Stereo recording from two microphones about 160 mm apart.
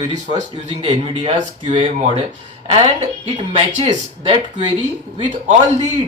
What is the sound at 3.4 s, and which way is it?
Speech, 35° right (ahead or behind).